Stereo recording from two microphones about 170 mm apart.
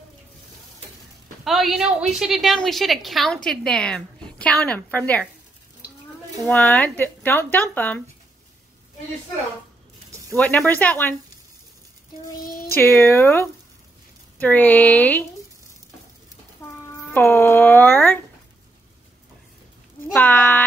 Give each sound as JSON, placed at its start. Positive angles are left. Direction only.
{"t": 1.4, "sound": "a woman's voice", "side_deg": 0}
{"t": 6.4, "sound": "speech", "side_deg": 10}
{"t": 10.3, "sound": "speech", "side_deg": 10}
{"t": 12.4, "sound": "music", "side_deg": 55}
{"t": 12.7, "sound": "speech", "side_deg": 15}
{"t": 17.1, "sound": "speech", "side_deg": 15}
{"t": 20.1, "sound": "speech", "side_deg": 5}